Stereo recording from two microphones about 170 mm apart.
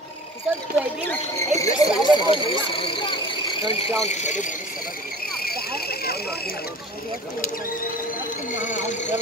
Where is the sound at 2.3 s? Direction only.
30° left (ahead or behind).